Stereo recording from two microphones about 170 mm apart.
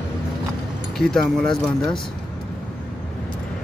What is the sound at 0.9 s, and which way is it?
Speech, 5° left (ahead or behind).